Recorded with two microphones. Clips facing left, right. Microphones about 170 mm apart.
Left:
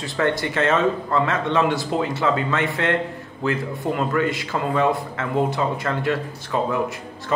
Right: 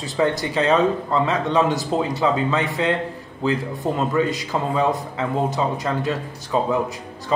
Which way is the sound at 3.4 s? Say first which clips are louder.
Right 1 dB; 20° right (ahead or behind).